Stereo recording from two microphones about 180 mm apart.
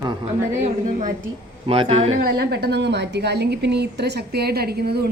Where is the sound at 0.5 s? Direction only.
40° right (ahead or behind).